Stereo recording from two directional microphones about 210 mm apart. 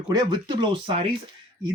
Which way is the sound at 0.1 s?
20° right (ahead or behind).